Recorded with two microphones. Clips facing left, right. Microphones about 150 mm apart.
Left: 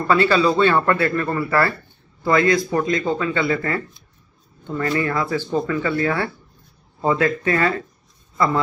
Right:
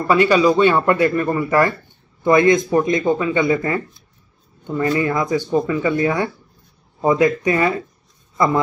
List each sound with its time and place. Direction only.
0.1 s speech: 15° right (ahead or behind)